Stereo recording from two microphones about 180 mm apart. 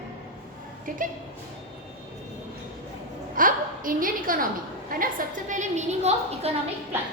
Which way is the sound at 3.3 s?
50° right (ahead or behind).